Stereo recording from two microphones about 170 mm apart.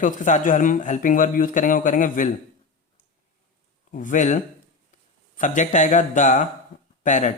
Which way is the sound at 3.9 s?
45° left (ahead or behind).